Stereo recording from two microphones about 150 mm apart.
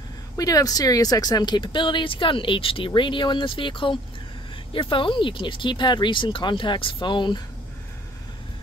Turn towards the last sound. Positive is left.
turn(degrees=30)  # may be behind; listen again after turning